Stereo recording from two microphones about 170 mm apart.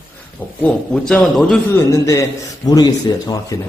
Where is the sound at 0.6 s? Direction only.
5° left (ahead or behind).